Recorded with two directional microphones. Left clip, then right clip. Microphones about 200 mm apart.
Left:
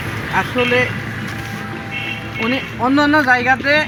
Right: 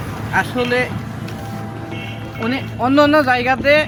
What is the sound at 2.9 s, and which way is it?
Speech, 30° right (ahead or behind).